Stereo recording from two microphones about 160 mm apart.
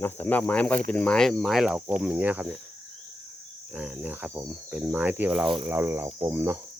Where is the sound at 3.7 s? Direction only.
10° right (ahead or behind).